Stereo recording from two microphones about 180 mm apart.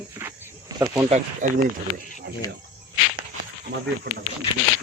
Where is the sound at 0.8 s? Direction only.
20° right (ahead or behind).